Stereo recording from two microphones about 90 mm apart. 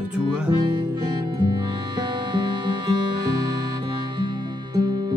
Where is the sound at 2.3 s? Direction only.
55° right (ahead or behind).